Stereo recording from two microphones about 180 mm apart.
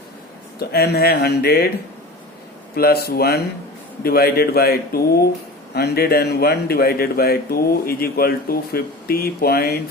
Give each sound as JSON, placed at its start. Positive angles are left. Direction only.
{"t": 0.7, "sound": "a man's voice", "side_deg": 60}
{"t": 2.7, "sound": "a man's voice", "side_deg": 60}